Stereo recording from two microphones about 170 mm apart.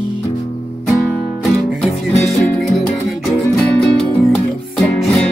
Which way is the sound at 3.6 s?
5° left (ahead or behind).